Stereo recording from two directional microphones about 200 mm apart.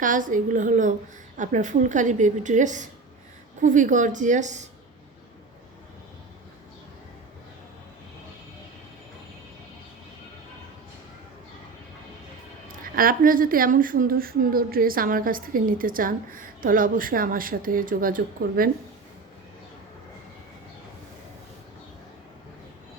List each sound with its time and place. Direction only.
0.0 s a woman's voice: 40° right (ahead or behind)
12.8 s speech: 45° right (ahead or behind)